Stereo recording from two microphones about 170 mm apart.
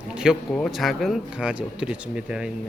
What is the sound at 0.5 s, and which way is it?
Speech, 5° left (ahead or behind).